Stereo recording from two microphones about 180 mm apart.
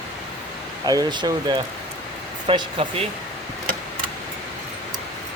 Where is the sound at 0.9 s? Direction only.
20° right (ahead or behind).